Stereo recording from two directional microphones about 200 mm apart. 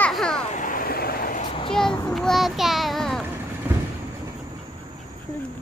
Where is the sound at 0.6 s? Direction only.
45° left (ahead or behind).